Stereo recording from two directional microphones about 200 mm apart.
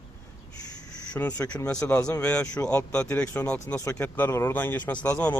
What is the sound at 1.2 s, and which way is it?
A man's voice, 10° left (ahead or behind).